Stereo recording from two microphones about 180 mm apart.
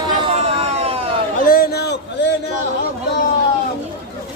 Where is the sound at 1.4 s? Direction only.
55° left (ahead or behind).